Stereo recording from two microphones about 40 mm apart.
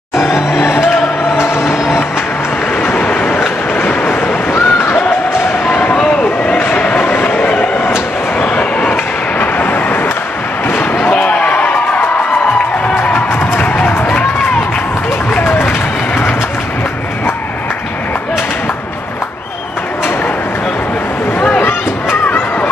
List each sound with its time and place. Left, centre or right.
0.6 s music: left
2.7 s vehicle: left
3.7 s a sound: left
5.7 s a sound: left
7.0 s bow-wow: left
7.8 s a sound: left
8.5 s train: left
9.4 s vehicle: left
10.9 s slam: left
11.2 s slam: left
11.7 s music: left
15.3 s run: left
21.4 s a sound: left